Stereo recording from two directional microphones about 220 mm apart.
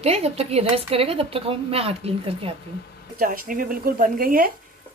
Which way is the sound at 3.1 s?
40° right (ahead or behind).